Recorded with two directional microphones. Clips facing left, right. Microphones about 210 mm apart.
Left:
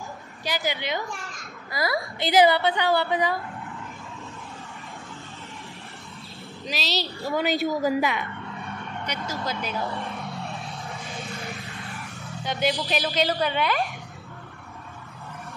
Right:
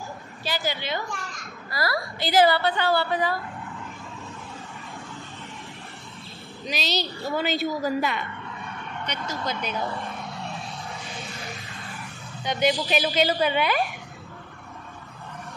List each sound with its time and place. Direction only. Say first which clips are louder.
0.5 s a woman's voice: left 1 dB; 15° left (ahead or behind)
6.6 s a woman's voice: right 1 dB; centre (ahead or behind)
7.3 s a woman's voice: left 2 dB; 15° left (ahead or behind)
12.4 s a woman's voice: right 2 dB; centre (ahead or behind)